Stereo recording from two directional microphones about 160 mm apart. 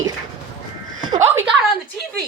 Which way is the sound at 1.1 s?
15° right (ahead or behind).